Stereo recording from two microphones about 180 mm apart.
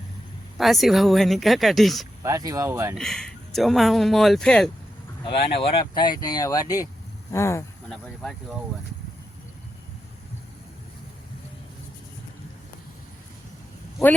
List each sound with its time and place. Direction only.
0.6 s speech: centre (ahead or behind)
2.2 s speech: 20° right (ahead or behind)
2.9 s speech: 5° left (ahead or behind)
5.4 s speech: 65° left (ahead or behind)
5.9 s speech: 25° left (ahead or behind)
7.9 s speech: centre (ahead or behind)